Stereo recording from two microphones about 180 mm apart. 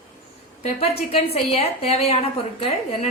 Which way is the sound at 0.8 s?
35° left (ahead or behind).